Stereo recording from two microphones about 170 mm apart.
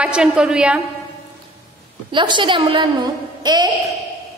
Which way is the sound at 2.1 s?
30° right (ahead or behind).